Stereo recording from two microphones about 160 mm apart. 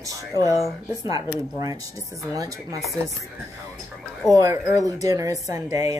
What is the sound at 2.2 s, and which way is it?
Speech, 20° right (ahead or behind).